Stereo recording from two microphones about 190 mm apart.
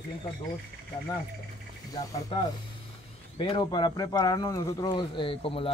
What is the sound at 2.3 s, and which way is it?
Speech, 25° left (ahead or behind).